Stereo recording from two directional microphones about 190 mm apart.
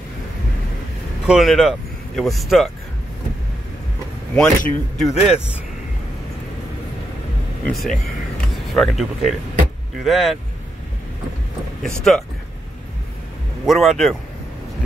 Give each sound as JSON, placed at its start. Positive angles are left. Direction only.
{"t": 1.2, "sound": "speech", "side_deg": 0}
{"t": 4.4, "sound": "speech", "side_deg": 5}
{"t": 7.6, "sound": "speech", "side_deg": 0}
{"t": 12.1, "sound": "speech", "side_deg": 5}
{"t": 13.7, "sound": "speech", "side_deg": 0}